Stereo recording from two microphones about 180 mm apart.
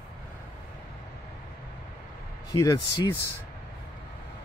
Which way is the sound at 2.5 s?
20° left (ahead or behind).